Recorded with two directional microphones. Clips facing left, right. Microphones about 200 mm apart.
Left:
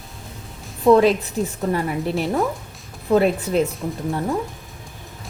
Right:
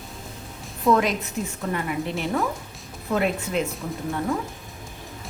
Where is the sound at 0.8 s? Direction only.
30° left (ahead or behind).